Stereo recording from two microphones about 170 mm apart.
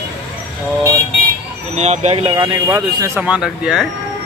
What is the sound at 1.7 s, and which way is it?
Speech, 40° right (ahead or behind).